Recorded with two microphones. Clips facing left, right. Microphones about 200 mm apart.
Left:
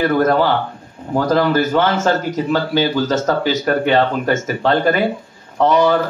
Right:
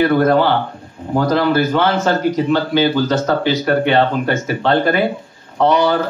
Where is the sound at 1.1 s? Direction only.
40° left (ahead or behind).